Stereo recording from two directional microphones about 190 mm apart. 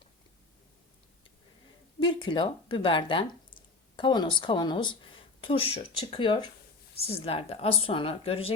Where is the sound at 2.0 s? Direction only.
25° left (ahead or behind).